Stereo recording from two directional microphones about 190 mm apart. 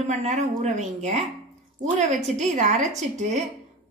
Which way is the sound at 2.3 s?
40° right (ahead or behind).